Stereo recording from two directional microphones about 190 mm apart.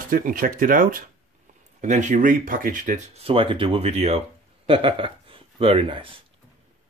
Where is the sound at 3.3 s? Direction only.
30° right (ahead or behind).